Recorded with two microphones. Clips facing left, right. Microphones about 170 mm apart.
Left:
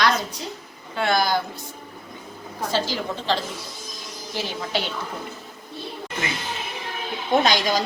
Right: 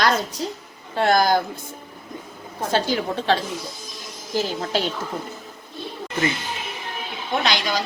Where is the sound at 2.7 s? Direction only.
60° right (ahead or behind).